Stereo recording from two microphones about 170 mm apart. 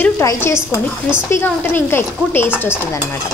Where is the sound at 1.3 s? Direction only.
10° left (ahead or behind).